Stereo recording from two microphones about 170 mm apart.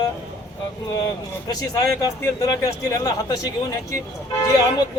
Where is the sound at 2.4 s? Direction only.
20° left (ahead or behind).